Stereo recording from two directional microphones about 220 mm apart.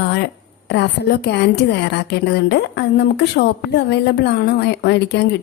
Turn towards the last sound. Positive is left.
turn(degrees=50)  # may be behind; listen again after turning